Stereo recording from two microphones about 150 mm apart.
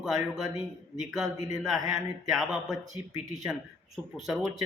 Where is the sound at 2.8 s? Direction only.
55° right (ahead or behind).